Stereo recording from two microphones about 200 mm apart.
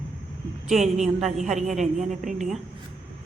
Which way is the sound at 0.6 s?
Centre (ahead or behind).